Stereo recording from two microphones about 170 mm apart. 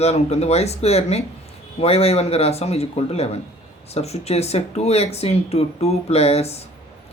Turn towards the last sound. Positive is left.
turn(degrees=35)  # may be behind; listen again after turning